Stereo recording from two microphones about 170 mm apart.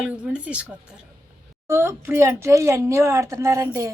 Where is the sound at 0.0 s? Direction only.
5° right (ahead or behind).